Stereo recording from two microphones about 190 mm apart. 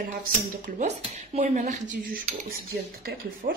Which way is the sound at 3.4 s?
45° right (ahead or behind).